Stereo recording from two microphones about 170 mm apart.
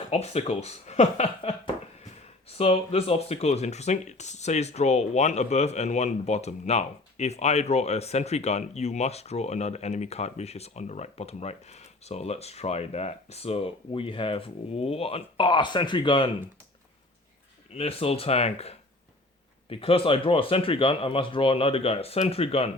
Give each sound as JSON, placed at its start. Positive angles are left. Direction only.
{"t": 0.1, "sound": "speech", "side_deg": 40}
{"t": 17.7, "sound": "speech", "side_deg": 35}